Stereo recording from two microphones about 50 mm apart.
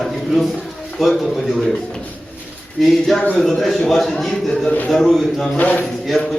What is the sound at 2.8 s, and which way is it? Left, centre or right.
A man's voice, centre.